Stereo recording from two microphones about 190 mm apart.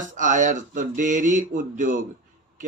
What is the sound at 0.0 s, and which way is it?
Speech, 40° right (ahead or behind).